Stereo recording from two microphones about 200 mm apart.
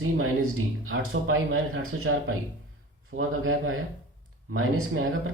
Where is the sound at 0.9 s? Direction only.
85° right.